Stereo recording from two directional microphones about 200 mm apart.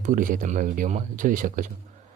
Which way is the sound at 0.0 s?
40° right (ahead or behind).